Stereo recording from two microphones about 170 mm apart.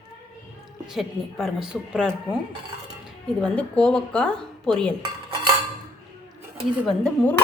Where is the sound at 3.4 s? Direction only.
5° left (ahead or behind).